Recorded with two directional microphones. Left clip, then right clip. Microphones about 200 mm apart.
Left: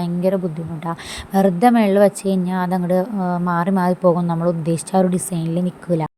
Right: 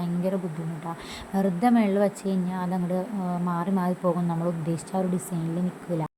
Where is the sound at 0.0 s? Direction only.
35° left (ahead or behind).